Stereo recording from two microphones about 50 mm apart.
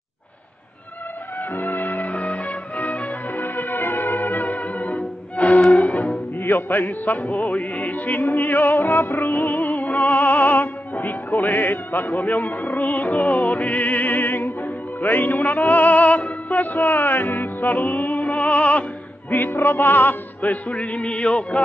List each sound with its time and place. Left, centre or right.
1.5 s music: left
1.8 s music: left
2.0 s music: left
3.3 s music: left
5.6 s music: centre
6.7 s music: left
8.4 s music: left
9.2 s music: left
12.2 s music: left
19.5 s music: left
20.7 s music: left
21.3 s a sound: centre